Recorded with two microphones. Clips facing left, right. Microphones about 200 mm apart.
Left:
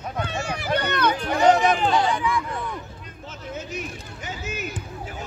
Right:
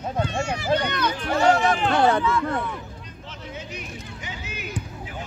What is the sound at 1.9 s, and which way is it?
Speech, 60° right (ahead or behind).